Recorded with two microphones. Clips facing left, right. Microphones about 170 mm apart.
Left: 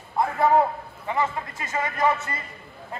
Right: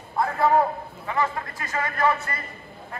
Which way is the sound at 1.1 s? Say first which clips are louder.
Even; 20° left (ahead or behind).